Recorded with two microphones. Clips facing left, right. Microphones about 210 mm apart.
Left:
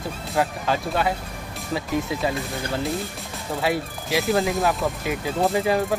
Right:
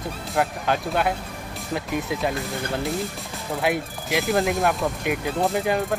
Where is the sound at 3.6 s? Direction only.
Centre (ahead or behind).